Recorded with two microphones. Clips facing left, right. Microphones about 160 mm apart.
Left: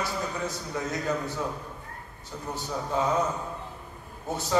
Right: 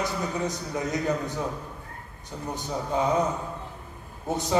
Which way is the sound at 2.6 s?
15° right (ahead or behind).